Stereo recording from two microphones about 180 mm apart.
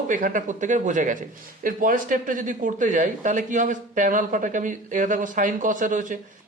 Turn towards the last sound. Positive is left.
turn(degrees=-45)  # may be behind; listen again after turning